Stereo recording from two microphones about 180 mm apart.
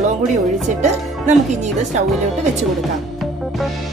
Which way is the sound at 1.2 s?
40° right (ahead or behind).